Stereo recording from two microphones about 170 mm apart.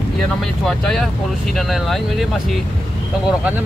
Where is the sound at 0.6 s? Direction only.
Centre (ahead or behind).